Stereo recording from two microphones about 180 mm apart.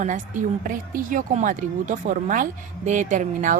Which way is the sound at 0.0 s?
45° right (ahead or behind).